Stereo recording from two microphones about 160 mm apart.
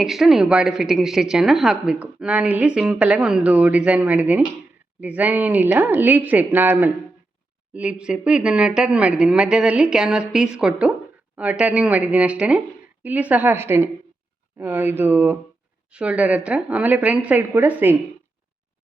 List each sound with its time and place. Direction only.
0.0 s a woman's voice: centre (ahead or behind)